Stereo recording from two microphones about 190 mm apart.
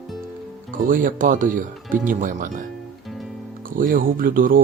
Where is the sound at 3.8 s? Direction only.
45° right (ahead or behind).